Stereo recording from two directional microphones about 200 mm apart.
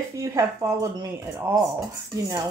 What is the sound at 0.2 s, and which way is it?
Speech, 15° right (ahead or behind).